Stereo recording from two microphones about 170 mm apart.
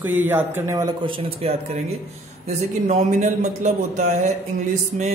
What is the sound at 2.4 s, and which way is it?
Speech, 45° right (ahead or behind).